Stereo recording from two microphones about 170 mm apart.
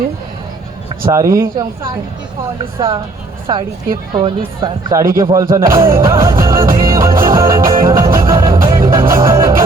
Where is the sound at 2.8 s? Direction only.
25° right (ahead or behind).